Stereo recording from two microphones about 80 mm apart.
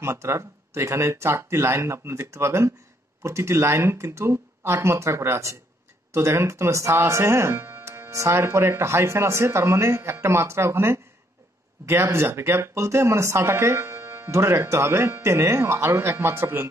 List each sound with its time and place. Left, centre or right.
0.0 s speech: right